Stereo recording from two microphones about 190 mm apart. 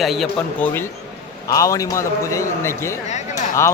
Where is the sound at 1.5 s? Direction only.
15° left (ahead or behind).